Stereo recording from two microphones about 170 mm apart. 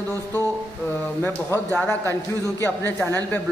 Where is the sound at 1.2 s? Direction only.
10° left (ahead or behind).